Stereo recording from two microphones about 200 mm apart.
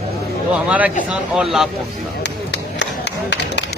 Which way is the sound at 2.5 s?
60° left (ahead or behind).